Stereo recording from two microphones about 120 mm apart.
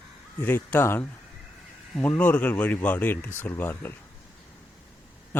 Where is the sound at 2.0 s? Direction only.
15° left (ahead or behind).